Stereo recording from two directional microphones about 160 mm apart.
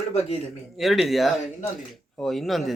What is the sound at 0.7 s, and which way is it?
Speech, centre (ahead or behind).